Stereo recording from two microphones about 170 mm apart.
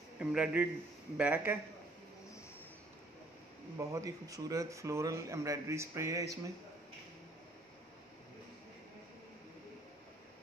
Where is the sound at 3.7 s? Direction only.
20° right (ahead or behind).